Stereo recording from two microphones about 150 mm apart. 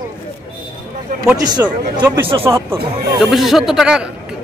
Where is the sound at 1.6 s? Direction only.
10° right (ahead or behind).